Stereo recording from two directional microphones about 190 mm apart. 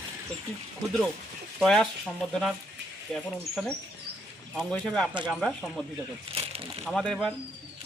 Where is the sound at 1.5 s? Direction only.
Centre (ahead or behind).